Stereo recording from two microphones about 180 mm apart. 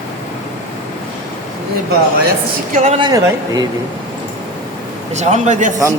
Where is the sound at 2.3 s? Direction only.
40° right (ahead or behind).